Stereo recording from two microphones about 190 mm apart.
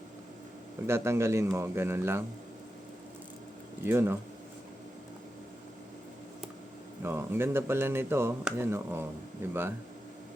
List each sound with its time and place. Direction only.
0.9 s speech: 15° right (ahead or behind)
3.8 s speech: 10° right (ahead or behind)
7.0 s speech: 10° right (ahead or behind)